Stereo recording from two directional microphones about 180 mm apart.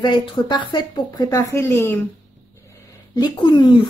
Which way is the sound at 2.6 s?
20° left (ahead or behind).